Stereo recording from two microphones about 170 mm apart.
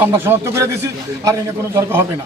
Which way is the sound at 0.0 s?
15° right (ahead or behind).